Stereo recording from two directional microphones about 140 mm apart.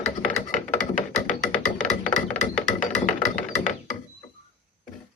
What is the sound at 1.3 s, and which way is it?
Music, 65° left (ahead or behind).